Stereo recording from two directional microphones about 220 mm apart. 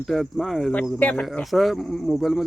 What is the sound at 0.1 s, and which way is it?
Speech, centre (ahead or behind).